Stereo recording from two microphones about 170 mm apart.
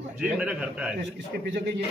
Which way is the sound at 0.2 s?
5° right (ahead or behind).